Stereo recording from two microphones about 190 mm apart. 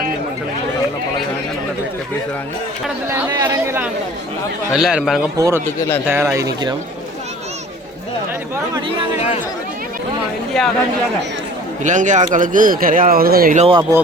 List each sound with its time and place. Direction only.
3.1 s a man's voice: 15° right (ahead or behind)
5.4 s speech: 15° right (ahead or behind)
10.5 s a man's voice: centre (ahead or behind)
11.8 s speech: 40° right (ahead or behind)
13.6 s speech: 30° right (ahead or behind)